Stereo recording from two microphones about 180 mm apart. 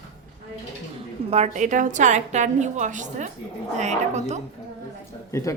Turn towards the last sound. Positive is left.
turn(degrees=15)  # may be behind; listen again after turning